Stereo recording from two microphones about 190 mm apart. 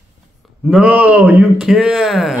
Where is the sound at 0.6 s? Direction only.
5° right (ahead or behind).